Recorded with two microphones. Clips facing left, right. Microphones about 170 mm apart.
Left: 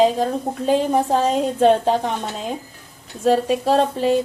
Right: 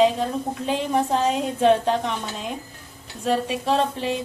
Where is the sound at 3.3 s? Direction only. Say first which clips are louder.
Left 5 dB; 40° left (ahead or behind).